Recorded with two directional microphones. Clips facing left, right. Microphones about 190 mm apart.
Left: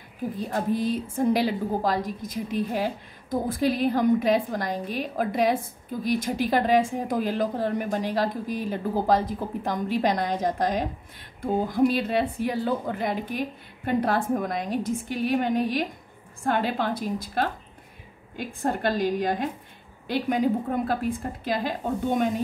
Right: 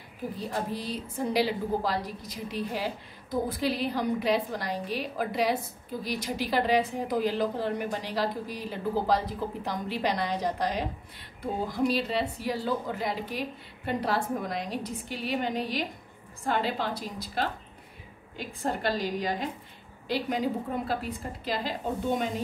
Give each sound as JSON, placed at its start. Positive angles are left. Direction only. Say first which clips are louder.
{"t": 0.5, "sound": "a woman's voice", "louder": "left 9 dB", "side_deg": 50}